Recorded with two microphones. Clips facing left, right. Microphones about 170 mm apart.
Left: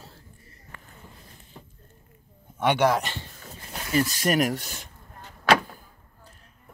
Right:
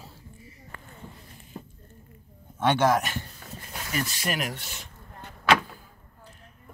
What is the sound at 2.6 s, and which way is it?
Speech, 15° left (ahead or behind).